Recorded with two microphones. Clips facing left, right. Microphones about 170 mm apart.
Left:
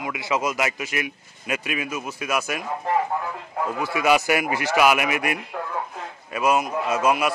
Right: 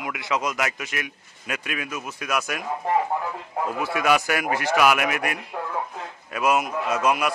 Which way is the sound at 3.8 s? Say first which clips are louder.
Left 2 dB; centre (ahead or behind).